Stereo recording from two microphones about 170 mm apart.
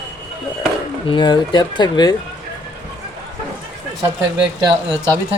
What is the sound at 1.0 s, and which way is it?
Speech, 25° left (ahead or behind).